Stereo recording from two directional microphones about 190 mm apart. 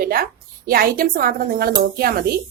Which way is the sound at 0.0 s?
50° right (ahead or behind).